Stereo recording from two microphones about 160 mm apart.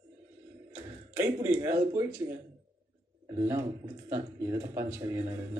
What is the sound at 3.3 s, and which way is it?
Speech, 15° right (ahead or behind).